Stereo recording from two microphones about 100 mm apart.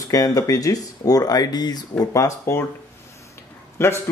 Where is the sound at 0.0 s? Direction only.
35° left (ahead or behind).